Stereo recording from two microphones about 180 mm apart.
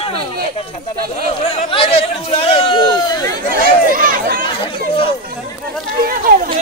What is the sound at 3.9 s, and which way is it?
Chatter, 50° right (ahead or behind).